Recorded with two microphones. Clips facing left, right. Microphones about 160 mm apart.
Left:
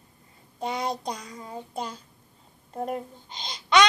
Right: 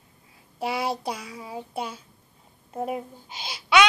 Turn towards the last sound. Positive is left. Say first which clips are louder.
# right 1 dB
turn(degrees=-5)  # may be behind; listen again after turning